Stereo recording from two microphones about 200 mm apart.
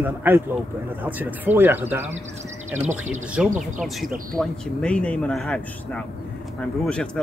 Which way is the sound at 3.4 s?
5° right (ahead or behind).